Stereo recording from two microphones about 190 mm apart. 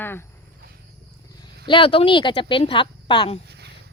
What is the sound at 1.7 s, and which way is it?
Speech, 30° left (ahead or behind).